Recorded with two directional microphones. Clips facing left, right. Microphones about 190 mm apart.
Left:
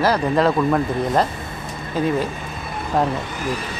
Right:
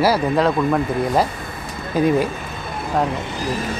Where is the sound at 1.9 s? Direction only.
15° right (ahead or behind).